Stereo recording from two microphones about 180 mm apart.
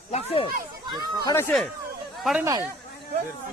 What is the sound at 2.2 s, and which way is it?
Speech, centre (ahead or behind).